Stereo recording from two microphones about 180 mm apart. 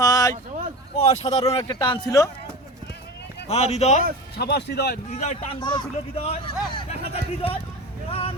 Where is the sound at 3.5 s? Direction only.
35° left (ahead or behind).